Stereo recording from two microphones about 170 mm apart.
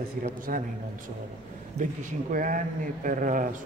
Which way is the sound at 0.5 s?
55° right (ahead or behind).